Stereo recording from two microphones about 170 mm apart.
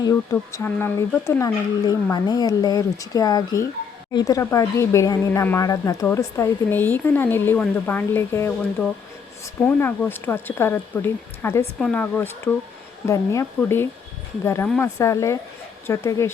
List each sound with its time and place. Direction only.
0.0 s speech: 20° left (ahead or behind)
9.6 s speech: 10° left (ahead or behind)